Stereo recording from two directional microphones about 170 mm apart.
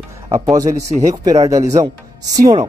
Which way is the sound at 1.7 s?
20° right (ahead or behind).